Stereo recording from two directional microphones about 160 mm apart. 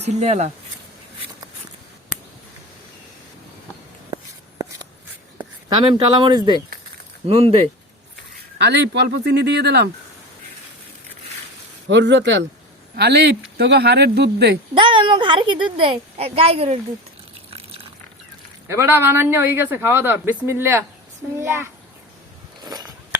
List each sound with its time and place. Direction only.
0.0 s speech: 45° right (ahead or behind)
5.6 s speech: 30° right (ahead or behind)
7.3 s speech: 35° right (ahead or behind)
8.5 s speech: 90° right
11.9 s speech: 90° right
14.8 s speech: 30° right (ahead or behind)
17.5 s water: 35° right (ahead or behind)
18.7 s speech: 15° right (ahead or behind)
22.6 s a sound: 25° right (ahead or behind)